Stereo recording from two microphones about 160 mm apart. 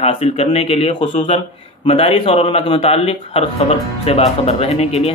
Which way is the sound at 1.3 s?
35° left (ahead or behind).